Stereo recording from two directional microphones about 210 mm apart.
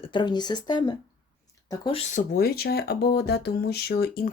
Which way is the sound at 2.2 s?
45° left (ahead or behind).